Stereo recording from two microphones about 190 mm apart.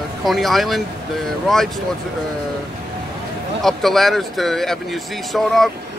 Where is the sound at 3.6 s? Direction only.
Centre (ahead or behind).